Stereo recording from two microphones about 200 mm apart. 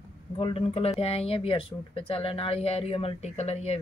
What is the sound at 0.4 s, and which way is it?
Speech, 30° left (ahead or behind).